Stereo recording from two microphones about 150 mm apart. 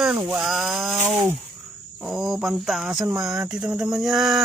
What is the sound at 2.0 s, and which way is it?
Speech, 5° right (ahead or behind).